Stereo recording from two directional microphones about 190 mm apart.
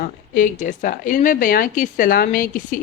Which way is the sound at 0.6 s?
40° left (ahead or behind).